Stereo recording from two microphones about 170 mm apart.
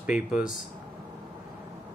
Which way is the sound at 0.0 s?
5° right (ahead or behind).